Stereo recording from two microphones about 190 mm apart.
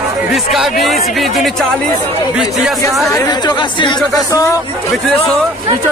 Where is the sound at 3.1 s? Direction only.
20° left (ahead or behind).